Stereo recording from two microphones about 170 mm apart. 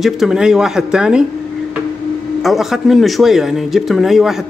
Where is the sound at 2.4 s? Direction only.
Centre (ahead or behind).